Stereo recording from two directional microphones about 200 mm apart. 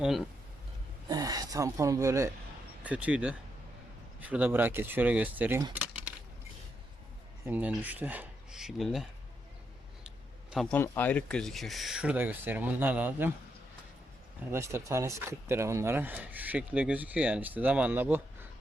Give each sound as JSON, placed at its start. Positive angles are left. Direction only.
{"t": 1.0, "sound": "speech", "side_deg": -20}
{"t": 7.4, "sound": "speech", "side_deg": -10}
{"t": 10.5, "sound": "speech", "side_deg": 5}
{"t": 14.5, "sound": "speech", "side_deg": -15}